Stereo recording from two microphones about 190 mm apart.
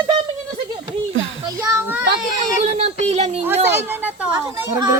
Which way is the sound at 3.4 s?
10° right (ahead or behind).